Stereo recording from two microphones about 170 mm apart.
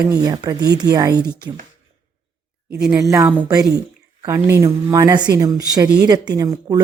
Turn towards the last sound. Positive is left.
turn(degrees=-20)  # may be behind; listen again after turning